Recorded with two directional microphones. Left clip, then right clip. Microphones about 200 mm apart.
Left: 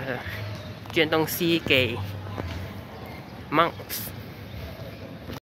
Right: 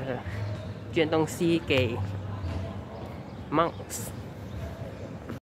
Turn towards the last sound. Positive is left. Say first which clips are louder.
# left 4 dB
turn(degrees=0)  # may be behind; listen again after turning